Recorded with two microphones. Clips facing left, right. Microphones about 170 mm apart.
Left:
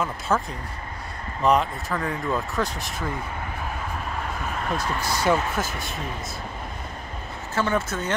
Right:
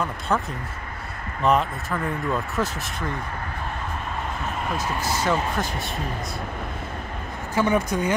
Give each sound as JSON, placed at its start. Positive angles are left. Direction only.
{"t": 0.3, "sound": "speech", "side_deg": 0}
{"t": 4.7, "sound": "speech", "side_deg": 10}
{"t": 7.5, "sound": "speech", "side_deg": -15}